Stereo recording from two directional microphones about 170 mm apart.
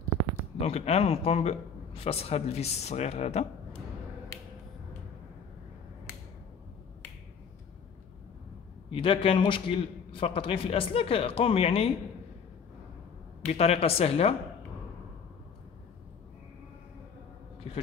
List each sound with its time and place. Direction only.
0.6 s a man's voice: 35° left (ahead or behind)
8.9 s a man's voice: 30° left (ahead or behind)
13.5 s a man's voice: 35° left (ahead or behind)
17.6 s a sound: 35° left (ahead or behind)